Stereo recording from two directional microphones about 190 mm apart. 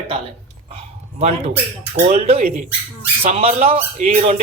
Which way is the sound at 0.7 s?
35° right (ahead or behind).